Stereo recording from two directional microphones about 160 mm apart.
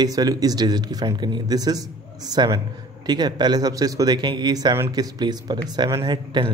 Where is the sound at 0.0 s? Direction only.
25° right (ahead or behind).